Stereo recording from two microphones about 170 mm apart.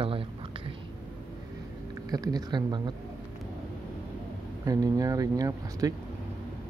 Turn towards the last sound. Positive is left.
turn(degrees=-20)  # may be behind; listen again after turning